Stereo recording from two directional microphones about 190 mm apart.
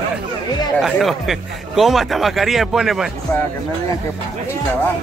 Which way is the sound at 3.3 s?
10° left (ahead or behind).